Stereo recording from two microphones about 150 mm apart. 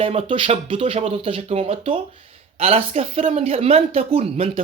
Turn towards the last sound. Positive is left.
turn(degrees=-45)  # may be behind; listen again after turning